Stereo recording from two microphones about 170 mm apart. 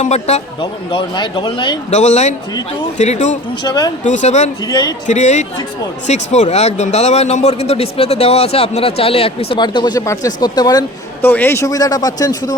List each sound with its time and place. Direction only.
0.0 s speech: 40° left (ahead or behind)
1.9 s speech: 40° left (ahead or behind)
3.6 s speech: 25° left (ahead or behind)
4.0 s speech: 45° left (ahead or behind)
4.6 s speech: 25° left (ahead or behind)
5.0 s speech: 45° left (ahead or behind); by 10.8 s 25° left (ahead or behind)
11.2 s speech: 10° left (ahead or behind)